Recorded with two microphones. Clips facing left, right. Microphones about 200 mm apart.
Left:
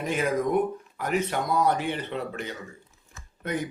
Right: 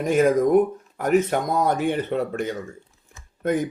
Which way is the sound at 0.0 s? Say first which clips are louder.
Right 8 dB; 45° right (ahead or behind).